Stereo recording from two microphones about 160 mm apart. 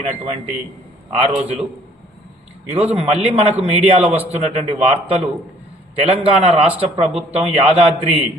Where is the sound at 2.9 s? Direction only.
40° right (ahead or behind).